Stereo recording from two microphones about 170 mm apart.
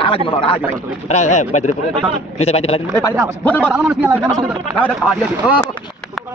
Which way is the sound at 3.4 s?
10° left (ahead or behind).